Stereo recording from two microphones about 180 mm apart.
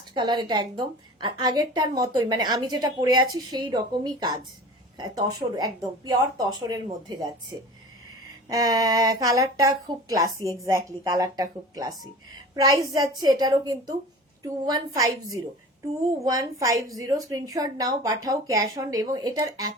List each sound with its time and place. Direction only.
0.1 s a woman's voice: 25° right (ahead or behind)
8.4 s a woman's voice: 20° right (ahead or behind)
16.2 s a woman's voice: 20° right (ahead or behind)